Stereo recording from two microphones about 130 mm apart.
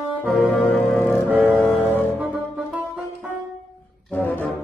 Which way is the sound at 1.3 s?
15° right (ahead or behind).